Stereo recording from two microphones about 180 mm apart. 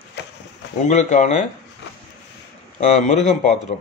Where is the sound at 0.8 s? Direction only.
40° left (ahead or behind).